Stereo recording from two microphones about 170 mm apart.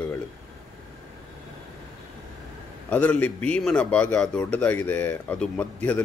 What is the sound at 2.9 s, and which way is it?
A man's voice, 10° left (ahead or behind).